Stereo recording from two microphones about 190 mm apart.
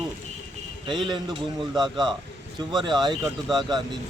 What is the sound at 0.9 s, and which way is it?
Speech, 25° right (ahead or behind).